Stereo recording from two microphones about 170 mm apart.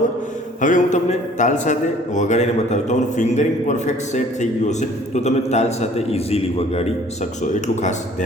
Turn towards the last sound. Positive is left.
turn(degrees=45)  # may be behind; listen again after turning